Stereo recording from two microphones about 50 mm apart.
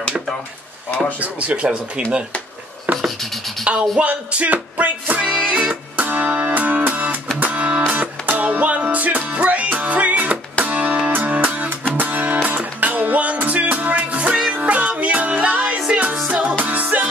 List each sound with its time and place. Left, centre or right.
1.2 s music: right
3.2 s music: centre
4.0 s music: right
16.5 s music: right